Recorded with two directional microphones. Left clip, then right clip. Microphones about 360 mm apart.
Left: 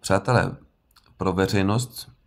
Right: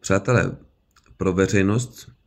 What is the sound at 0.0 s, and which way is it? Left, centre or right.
Speech, centre.